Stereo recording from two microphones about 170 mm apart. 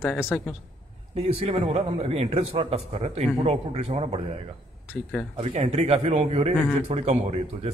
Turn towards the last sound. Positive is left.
turn(degrees=-35)  # may be behind; listen again after turning